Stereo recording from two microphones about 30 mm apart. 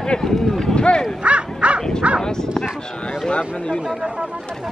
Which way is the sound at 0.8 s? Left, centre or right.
Left.